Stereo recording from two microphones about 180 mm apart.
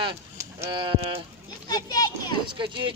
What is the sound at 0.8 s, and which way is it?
Speech, 30° right (ahead or behind).